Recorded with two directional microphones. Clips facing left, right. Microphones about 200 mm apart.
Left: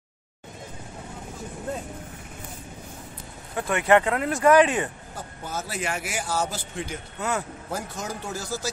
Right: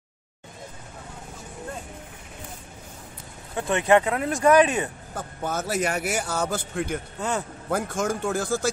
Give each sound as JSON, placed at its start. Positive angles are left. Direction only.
{"t": 3.5, "sound": "speech", "side_deg": -20}
{"t": 5.1, "sound": "a man's voice", "side_deg": -60}
{"t": 5.7, "sound": "speech", "side_deg": -40}
{"t": 6.2, "sound": "a man's voice", "side_deg": -60}
{"t": 7.2, "sound": "speech", "side_deg": -30}
{"t": 7.7, "sound": "speech", "side_deg": -50}